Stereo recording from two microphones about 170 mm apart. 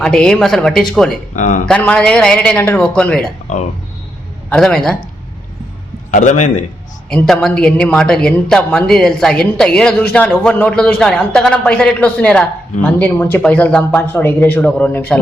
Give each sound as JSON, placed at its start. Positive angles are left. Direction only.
{"t": 0.0, "sound": "a woman's voice", "side_deg": 5}
{"t": 4.4, "sound": "a woman's voice", "side_deg": 5}
{"t": 6.1, "sound": "a man's voice", "side_deg": 45}
{"t": 7.1, "sound": "a woman's voice", "side_deg": 5}